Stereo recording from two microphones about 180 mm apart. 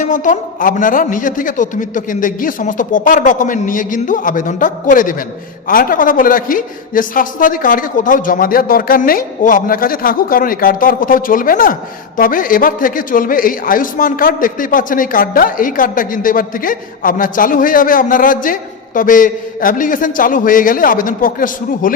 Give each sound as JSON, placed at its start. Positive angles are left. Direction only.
{"t": 0.0, "sound": "a man's voice", "side_deg": 45}